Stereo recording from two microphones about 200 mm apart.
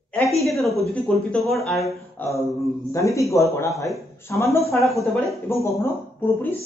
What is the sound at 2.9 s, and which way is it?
A woman's voice, 15° left (ahead or behind).